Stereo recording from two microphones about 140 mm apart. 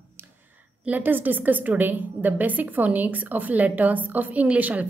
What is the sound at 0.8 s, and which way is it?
A woman's voice, 15° right (ahead or behind).